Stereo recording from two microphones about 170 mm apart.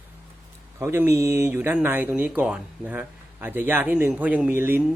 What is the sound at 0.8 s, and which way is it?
Speech, 15° right (ahead or behind).